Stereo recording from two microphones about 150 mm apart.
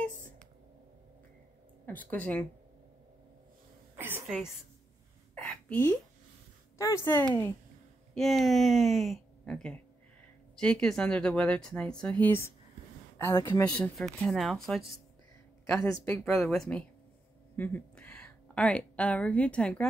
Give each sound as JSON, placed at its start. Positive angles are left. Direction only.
{"t": 1.9, "sound": "speech", "side_deg": 10}
{"t": 3.9, "sound": "a sound", "side_deg": -15}
{"t": 5.3, "sound": "a sound", "side_deg": 10}
{"t": 6.8, "sound": "speech", "side_deg": 20}
{"t": 8.1, "sound": "speech", "side_deg": 0}
{"t": 13.7, "sound": "speech", "side_deg": 5}
{"t": 15.7, "sound": "speech", "side_deg": 15}
{"t": 16.3, "sound": "a woman's voice", "side_deg": 0}